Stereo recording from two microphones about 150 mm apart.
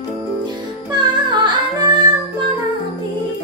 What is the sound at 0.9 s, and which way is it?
Music, 30° right (ahead or behind).